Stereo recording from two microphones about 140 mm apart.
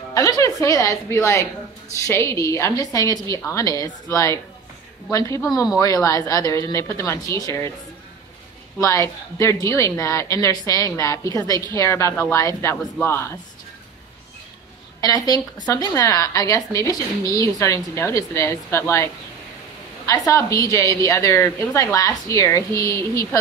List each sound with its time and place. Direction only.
0.1 s a woman's voice: 25° left (ahead or behind)
8.8 s a woman's voice: 20° left (ahead or behind)
15.0 s a woman's voice: 25° left (ahead or behind)
20.1 s a woman's voice: 20° left (ahead or behind)